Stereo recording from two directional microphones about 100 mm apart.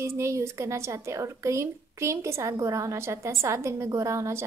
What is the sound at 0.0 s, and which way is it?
A woman's voice, 30° right (ahead or behind).